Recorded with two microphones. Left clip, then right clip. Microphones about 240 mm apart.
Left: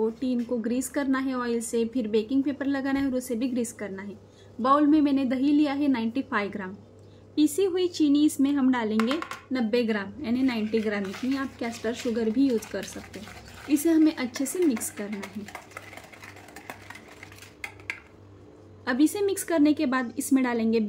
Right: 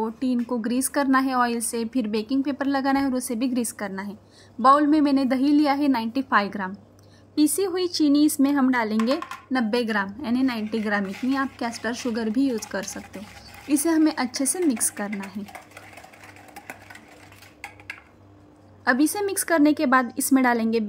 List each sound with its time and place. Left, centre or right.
0.0 s a woman's voice: right
18.9 s a woman's voice: right